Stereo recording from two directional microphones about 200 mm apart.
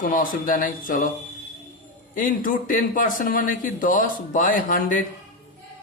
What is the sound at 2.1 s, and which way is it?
A man's voice, 40° left (ahead or behind).